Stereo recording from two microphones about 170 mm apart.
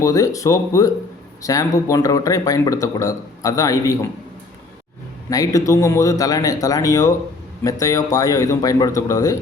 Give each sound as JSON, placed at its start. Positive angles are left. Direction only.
{"t": 0.0, "sound": "speech", "side_deg": 20}
{"t": 5.3, "sound": "speech", "side_deg": 20}